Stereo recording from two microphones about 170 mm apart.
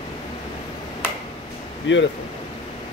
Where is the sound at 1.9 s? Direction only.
90° left.